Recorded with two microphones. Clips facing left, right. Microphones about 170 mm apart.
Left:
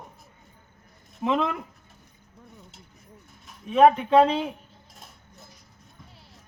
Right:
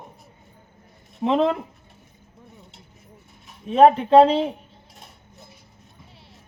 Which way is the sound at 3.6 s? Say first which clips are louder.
Right 3 dB; 30° right (ahead or behind).